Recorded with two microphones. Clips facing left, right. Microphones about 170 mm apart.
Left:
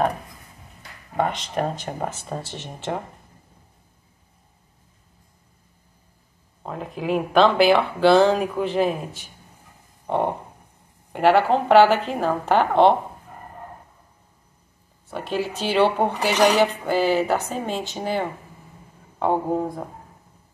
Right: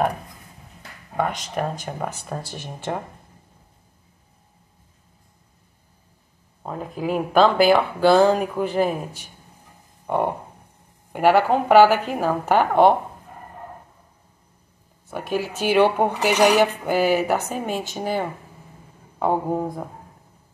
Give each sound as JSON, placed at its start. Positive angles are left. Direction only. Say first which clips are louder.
{"t": 1.1, "sound": "speech", "louder": "left 1 dB", "side_deg": -5}
{"t": 2.2, "sound": "speech", "louder": "even", "side_deg": 20}
{"t": 6.6, "sound": "speech", "louder": "right 2 dB", "side_deg": -5}
{"t": 11.1, "sound": "speech", "louder": "even", "side_deg": -10}
{"t": 15.0, "sound": "speech", "louder": "even", "side_deg": -10}